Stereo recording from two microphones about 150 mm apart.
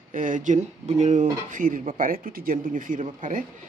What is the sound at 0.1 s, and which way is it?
Speech, 65° right (ahead or behind).